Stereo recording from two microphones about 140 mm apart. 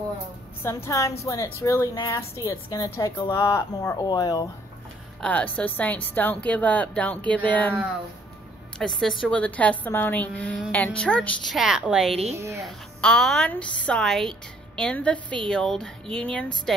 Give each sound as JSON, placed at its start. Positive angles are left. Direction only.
{"t": 0.7, "sound": "a woman's voice", "side_deg": 20}
{"t": 5.2, "sound": "a woman's voice", "side_deg": 10}
{"t": 8.7, "sound": "a woman's voice", "side_deg": 5}
{"t": 12.4, "sound": "speech", "side_deg": -20}
{"t": 12.6, "sound": "a woman's voice", "side_deg": 5}